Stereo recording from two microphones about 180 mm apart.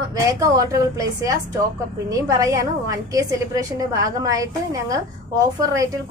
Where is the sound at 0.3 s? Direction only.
20° right (ahead or behind).